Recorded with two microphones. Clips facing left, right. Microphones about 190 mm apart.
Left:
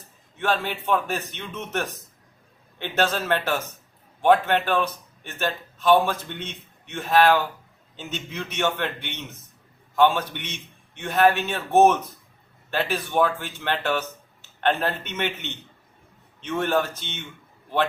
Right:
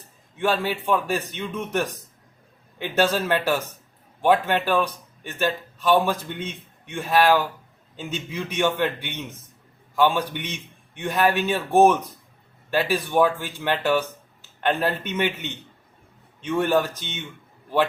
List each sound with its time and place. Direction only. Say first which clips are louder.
0.3 s a man's voice: right 2 dB; 10° right (ahead or behind)